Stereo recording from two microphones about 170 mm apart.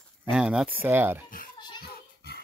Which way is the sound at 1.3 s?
55° left (ahead or behind).